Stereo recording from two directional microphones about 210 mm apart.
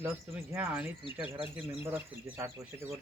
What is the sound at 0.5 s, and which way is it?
Speech, 10° right (ahead or behind).